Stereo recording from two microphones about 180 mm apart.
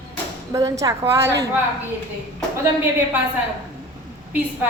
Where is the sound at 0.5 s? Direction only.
20° right (ahead or behind).